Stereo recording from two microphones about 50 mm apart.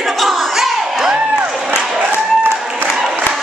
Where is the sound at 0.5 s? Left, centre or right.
Centre.